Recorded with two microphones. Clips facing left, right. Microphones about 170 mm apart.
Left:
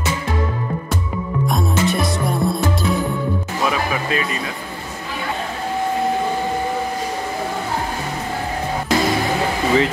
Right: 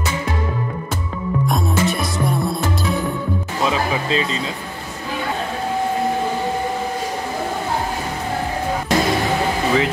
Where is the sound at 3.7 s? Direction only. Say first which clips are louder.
Right 1 dB; 25° right (ahead or behind).